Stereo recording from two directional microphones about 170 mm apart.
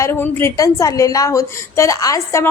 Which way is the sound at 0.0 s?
15° left (ahead or behind).